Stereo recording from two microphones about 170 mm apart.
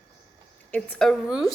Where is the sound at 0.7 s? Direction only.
5° left (ahead or behind).